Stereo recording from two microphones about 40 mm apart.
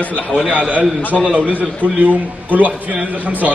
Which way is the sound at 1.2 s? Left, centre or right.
Right.